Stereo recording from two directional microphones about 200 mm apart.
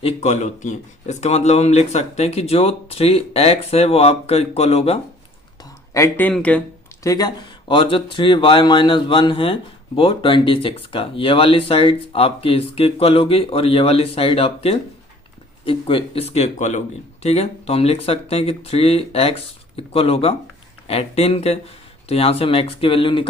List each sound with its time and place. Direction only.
0.0 s speech: 35° left (ahead or behind)
5.9 s speech: 10° left (ahead or behind)
7.0 s speech: 20° left (ahead or behind)